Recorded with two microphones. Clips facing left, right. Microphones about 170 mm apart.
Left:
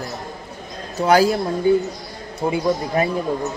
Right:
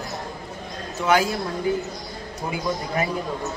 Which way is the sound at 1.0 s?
35° left (ahead or behind).